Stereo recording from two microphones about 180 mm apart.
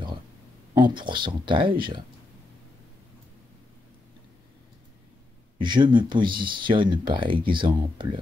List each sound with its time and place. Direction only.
0.7 s speech: 25° right (ahead or behind)
5.6 s speech: 25° right (ahead or behind)